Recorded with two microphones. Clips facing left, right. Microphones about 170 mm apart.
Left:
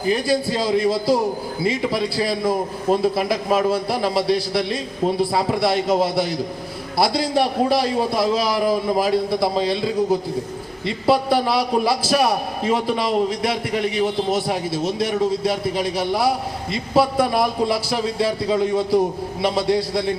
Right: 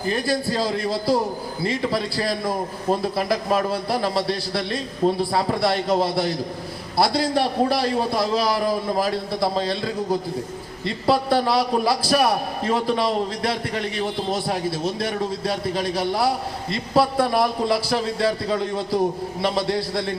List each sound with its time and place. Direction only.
0.0 s a man's voice: 15° left (ahead or behind)
3.5 s a man's voice: 5° left (ahead or behind)